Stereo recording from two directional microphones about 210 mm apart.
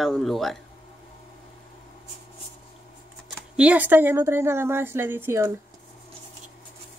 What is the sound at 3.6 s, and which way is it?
A woman's voice, 5° right (ahead or behind).